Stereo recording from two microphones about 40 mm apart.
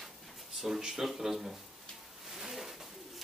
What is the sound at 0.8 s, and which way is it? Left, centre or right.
Speech, centre.